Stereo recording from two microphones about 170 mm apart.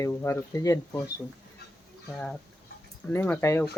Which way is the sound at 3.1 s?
10° left (ahead or behind).